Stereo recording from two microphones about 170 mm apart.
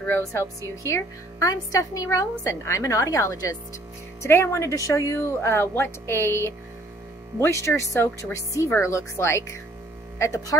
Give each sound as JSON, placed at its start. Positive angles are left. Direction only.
{"t": 0.0, "sound": "a woman's voice", "side_deg": 15}